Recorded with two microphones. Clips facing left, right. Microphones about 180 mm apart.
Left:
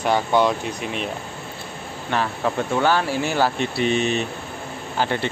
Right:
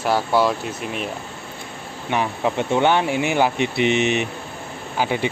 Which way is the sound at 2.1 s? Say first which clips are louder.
Right 1 dB; 15° right (ahead or behind).